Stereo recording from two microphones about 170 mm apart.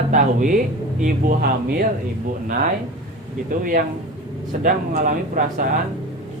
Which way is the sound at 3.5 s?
55° right (ahead or behind).